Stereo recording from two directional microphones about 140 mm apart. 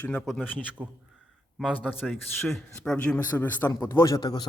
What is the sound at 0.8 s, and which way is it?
Speech, 10° right (ahead or behind).